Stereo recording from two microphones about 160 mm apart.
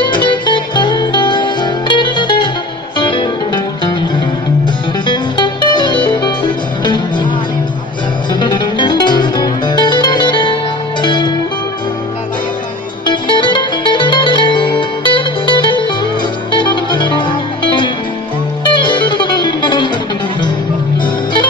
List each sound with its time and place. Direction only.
0.0 s music: 30° left (ahead or behind)
5.0 s music: 30° left (ahead or behind)
8.3 s music: 30° left (ahead or behind)
13.0 s music: 30° left (ahead or behind)
18.7 s music: 30° left (ahead or behind)
21.0 s music: 30° left (ahead or behind)